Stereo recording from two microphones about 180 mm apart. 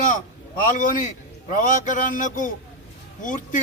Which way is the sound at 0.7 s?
50° left (ahead or behind).